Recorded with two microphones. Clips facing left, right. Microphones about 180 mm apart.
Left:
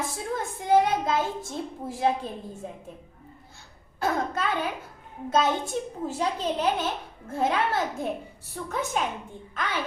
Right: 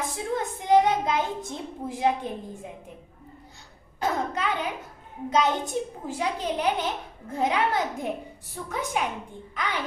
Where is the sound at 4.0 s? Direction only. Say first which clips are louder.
Even; 15° right (ahead or behind).